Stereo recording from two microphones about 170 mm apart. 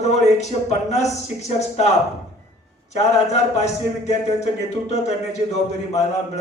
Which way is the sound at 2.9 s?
40° left (ahead or behind).